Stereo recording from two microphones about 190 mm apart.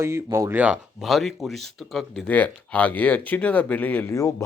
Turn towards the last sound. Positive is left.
turn(degrees=15)  # may be behind; listen again after turning